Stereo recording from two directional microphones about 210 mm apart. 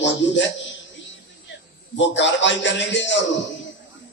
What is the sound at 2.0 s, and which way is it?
Speech, 60° left (ahead or behind).